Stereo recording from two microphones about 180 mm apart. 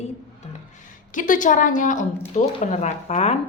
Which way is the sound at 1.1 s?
45° left (ahead or behind).